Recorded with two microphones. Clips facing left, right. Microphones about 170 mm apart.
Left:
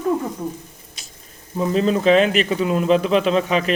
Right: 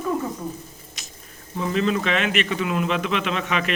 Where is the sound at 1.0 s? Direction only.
30° left (ahead or behind).